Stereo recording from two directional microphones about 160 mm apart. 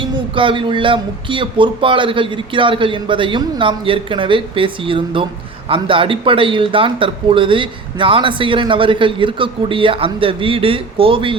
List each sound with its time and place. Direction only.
0.0 s a man's voice: 30° right (ahead or behind)